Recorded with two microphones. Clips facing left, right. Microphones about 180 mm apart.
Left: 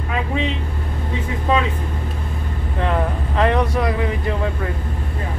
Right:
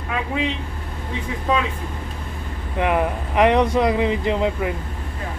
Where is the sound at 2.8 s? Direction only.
15° right (ahead or behind).